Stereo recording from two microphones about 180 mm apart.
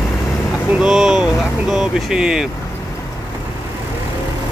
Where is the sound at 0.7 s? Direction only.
5° right (ahead or behind).